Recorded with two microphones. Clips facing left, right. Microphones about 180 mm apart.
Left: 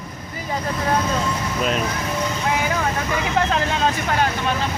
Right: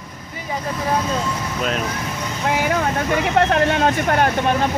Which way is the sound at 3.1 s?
60° right (ahead or behind).